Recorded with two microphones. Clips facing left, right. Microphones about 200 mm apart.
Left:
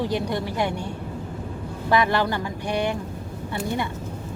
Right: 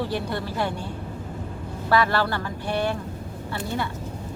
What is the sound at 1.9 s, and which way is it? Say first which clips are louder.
Speech: left 1 dB; 15° left (ahead or behind).